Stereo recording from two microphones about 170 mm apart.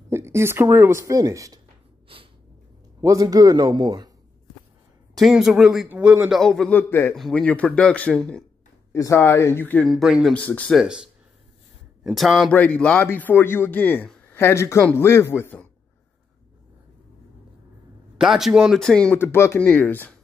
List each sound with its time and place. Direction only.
0.1 s speech: 15° right (ahead or behind)
3.0 s a man's voice: 20° right (ahead or behind)
5.2 s speech: 5° right (ahead or behind)
8.9 s a man's voice: 20° left (ahead or behind)
9.8 s speech: centre (ahead or behind)
12.0 s a man's voice: centre (ahead or behind)
18.1 s a man's voice: centre (ahead or behind)